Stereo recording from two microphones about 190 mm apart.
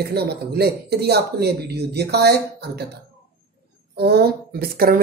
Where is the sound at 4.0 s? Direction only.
55° right (ahead or behind).